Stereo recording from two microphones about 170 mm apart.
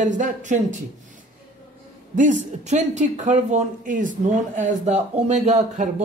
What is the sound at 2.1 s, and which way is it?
Speech, 45° right (ahead or behind).